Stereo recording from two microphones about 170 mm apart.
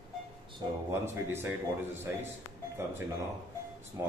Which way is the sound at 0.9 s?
15° right (ahead or behind).